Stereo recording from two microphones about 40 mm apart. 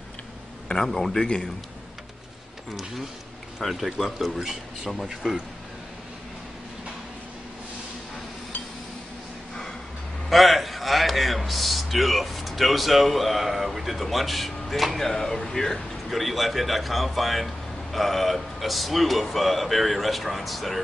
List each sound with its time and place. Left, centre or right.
0.7 s speech: left
0.9 s speech: centre
1.2 s a man's voice: left
3.5 s speech: centre
10.3 s a man's voice: centre